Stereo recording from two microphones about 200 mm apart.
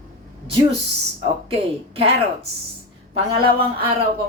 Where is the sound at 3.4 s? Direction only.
25° right (ahead or behind).